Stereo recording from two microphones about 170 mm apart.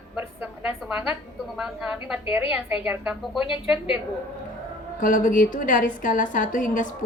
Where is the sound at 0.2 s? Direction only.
5° right (ahead or behind).